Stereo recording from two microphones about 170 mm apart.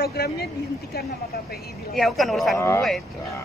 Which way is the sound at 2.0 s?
Centre (ahead or behind).